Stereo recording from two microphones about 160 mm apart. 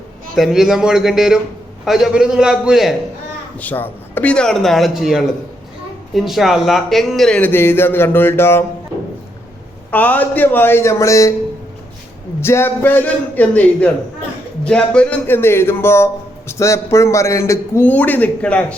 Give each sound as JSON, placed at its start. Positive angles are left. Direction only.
{"t": 0.3, "sound": "speech", "side_deg": 0}
{"t": 3.6, "sound": "speech", "side_deg": 10}
{"t": 9.9, "sound": "speech", "side_deg": 10}
{"t": 12.4, "sound": "speech", "side_deg": 15}